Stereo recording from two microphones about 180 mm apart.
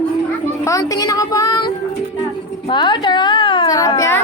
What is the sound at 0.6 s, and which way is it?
A child's voice, 20° left (ahead or behind).